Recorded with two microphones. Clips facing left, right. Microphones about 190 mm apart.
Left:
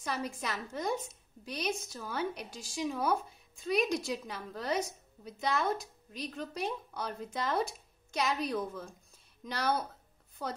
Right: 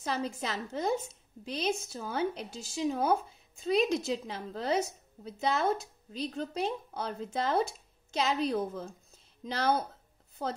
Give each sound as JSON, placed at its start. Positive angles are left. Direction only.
{"t": 0.0, "sound": "a woman's voice", "side_deg": -25}